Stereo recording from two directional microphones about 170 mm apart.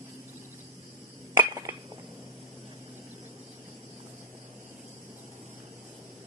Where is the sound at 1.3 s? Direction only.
20° right (ahead or behind).